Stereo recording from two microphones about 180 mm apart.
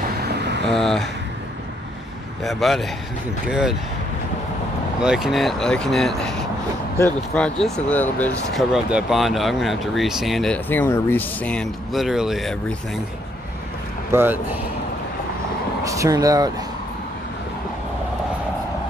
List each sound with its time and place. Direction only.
0.2 s vehicle: 65° right (ahead or behind)
0.7 s speech: centre (ahead or behind)
2.4 s speech: centre (ahead or behind)
5.0 s speech: 5° right (ahead or behind)
8.7 s speech: centre (ahead or behind)
14.1 s speech: 10° right (ahead or behind)
15.8 s speech: 20° right (ahead or behind)